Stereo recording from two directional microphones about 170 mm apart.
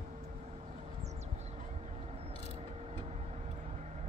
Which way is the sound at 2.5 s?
35° right (ahead or behind).